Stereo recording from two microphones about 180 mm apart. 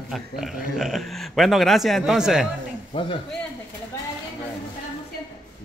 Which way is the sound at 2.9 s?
30° left (ahead or behind).